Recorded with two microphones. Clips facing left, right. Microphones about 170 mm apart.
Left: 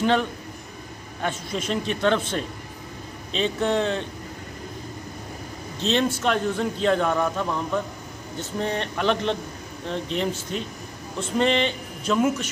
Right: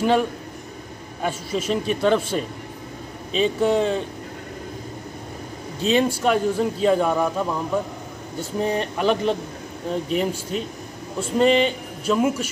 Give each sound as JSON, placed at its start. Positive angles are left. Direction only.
{"t": 0.0, "sound": "a man's voice", "side_deg": -5}
{"t": 5.8, "sound": "a man's voice", "side_deg": -10}